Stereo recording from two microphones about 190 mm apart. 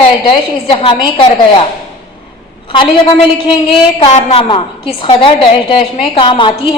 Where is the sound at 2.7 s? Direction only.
25° left (ahead or behind).